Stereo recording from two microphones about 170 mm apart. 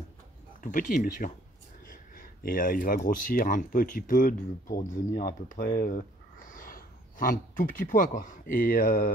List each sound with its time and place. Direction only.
0.6 s speech: 50° left (ahead or behind)